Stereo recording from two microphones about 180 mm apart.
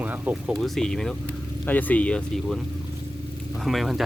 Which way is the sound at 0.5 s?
5° left (ahead or behind).